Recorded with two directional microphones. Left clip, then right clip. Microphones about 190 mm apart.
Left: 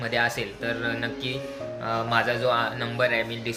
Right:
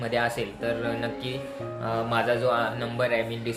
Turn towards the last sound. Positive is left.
turn(degrees=-5)  # may be behind; listen again after turning